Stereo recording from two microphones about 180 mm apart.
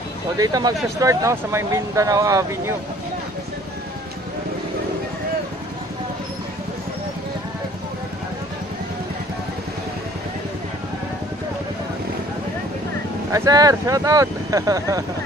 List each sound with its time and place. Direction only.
0.4 s speech: 20° right (ahead or behind)
13.3 s speech: 20° right (ahead or behind)